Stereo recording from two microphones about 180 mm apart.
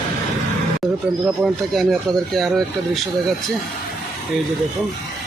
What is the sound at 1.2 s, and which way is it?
Speech, centre (ahead or behind).